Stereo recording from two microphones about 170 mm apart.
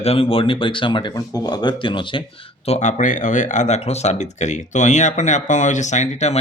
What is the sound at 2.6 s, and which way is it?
Speech, 40° left (ahead or behind).